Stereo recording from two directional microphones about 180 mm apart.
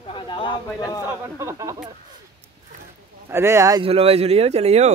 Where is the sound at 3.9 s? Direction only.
30° right (ahead or behind).